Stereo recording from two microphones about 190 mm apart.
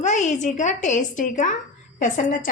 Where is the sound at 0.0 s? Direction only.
40° left (ahead or behind).